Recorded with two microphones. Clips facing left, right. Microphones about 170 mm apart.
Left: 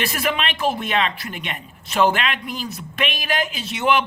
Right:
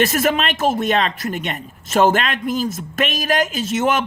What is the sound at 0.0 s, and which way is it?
Speech, 45° right (ahead or behind).